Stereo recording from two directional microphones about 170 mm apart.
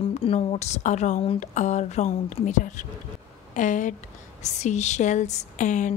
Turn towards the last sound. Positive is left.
turn(degrees=45)  # may be behind; listen again after turning